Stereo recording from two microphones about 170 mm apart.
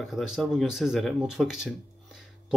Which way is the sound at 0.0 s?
Centre (ahead or behind).